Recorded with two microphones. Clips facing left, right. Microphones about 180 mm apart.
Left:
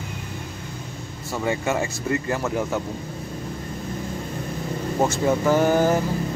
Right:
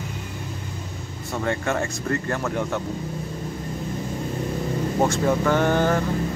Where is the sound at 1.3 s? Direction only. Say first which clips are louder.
Left 1 dB; 5° left (ahead or behind).